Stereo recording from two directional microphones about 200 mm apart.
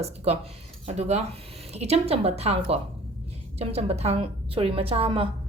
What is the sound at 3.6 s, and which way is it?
A woman's voice, 30° right (ahead or behind).